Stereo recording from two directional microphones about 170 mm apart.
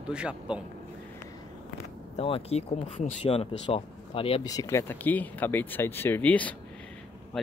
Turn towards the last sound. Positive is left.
turn(degrees=0)  # may be behind; listen again after turning